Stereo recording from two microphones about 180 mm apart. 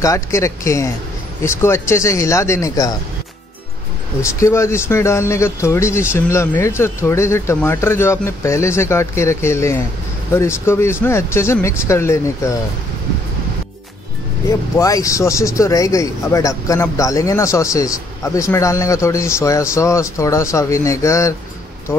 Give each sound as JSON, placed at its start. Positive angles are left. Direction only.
{"t": 0.0, "sound": "a man's voice", "side_deg": 15}
{"t": 4.2, "sound": "a man's voice", "side_deg": 15}
{"t": 14.8, "sound": "a man's voice", "side_deg": 20}